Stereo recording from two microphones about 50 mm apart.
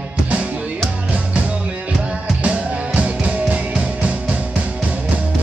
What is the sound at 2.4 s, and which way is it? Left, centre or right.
Music, right.